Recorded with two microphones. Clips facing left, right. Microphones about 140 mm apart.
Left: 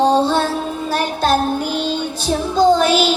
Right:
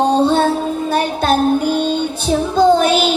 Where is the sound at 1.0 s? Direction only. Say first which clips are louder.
Right 1 dB; 55° right (ahead or behind).